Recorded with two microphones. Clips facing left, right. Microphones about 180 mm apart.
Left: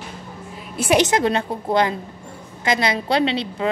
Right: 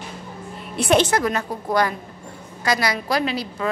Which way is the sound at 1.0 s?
25° left (ahead or behind).